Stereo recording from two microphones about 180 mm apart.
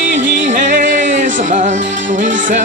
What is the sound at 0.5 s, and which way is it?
Music, 45° right (ahead or behind).